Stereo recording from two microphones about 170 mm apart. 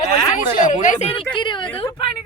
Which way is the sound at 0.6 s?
50° left (ahead or behind).